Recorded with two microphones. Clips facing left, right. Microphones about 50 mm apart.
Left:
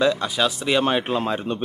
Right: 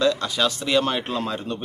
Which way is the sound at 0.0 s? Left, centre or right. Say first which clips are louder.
Left 1 dB; centre.